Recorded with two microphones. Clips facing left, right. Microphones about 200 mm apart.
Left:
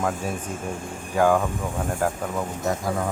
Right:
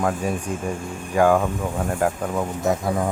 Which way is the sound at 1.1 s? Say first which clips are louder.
Right 2 dB; 10° right (ahead or behind).